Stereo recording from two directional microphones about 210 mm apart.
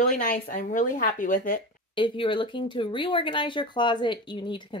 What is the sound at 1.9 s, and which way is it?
Speech, 25° left (ahead or behind).